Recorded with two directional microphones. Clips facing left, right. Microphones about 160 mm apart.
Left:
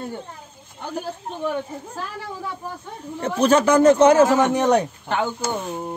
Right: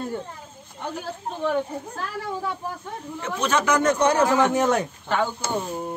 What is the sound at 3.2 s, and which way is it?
A man's voice, 35° left (ahead or behind).